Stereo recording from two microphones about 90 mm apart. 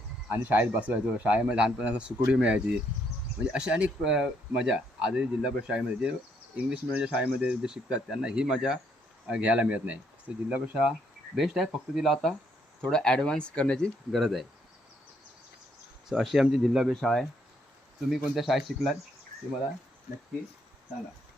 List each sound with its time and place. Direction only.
0.3 s speech: 30° right (ahead or behind)
0.5 s speech: 15° right (ahead or behind); by 14.4 s centre (ahead or behind)
16.0 s speech: 5° right (ahead or behind)